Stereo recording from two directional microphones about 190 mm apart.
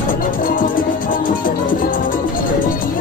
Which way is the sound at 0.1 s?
45° left (ahead or behind).